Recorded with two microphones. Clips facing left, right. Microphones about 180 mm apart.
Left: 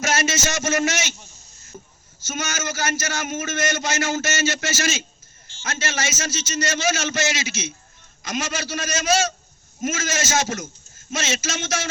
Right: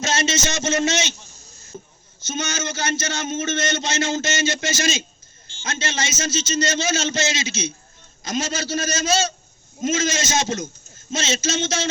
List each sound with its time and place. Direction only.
0.0 s a man's voice: 20° right (ahead or behind)
2.2 s a man's voice: 20° right (ahead or behind)